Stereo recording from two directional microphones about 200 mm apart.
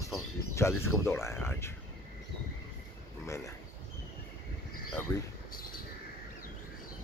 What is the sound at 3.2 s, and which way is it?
Speech, 15° left (ahead or behind).